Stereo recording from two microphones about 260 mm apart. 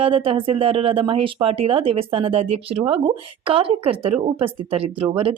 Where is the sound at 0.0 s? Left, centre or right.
Right.